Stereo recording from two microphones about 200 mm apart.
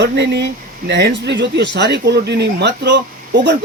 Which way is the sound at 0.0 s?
60° right (ahead or behind).